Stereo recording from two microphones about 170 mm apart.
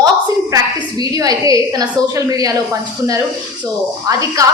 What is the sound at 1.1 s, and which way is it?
A woman's voice, 20° right (ahead or behind).